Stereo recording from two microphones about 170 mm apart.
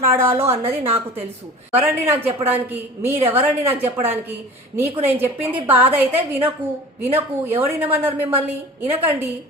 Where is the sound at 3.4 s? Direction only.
35° right (ahead or behind).